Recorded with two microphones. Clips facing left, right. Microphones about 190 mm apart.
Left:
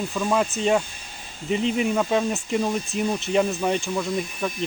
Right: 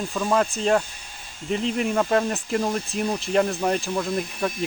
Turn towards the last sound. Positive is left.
turn(degrees=0)  # may be behind; listen again after turning